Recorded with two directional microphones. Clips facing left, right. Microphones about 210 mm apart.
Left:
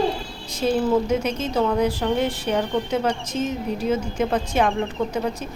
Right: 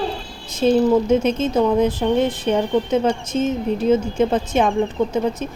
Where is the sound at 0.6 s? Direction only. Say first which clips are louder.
Right 5 dB; 25° right (ahead or behind).